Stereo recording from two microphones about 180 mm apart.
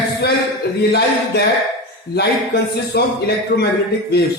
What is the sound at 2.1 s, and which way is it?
Speech, 65° left (ahead or behind).